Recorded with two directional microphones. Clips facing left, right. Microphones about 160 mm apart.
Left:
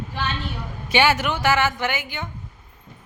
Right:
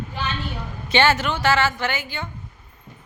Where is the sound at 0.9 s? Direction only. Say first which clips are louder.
Even; 10° left (ahead or behind).